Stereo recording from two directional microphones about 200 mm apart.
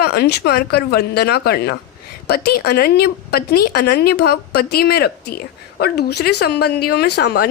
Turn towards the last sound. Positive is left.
turn(degrees=55)  # may be behind; listen again after turning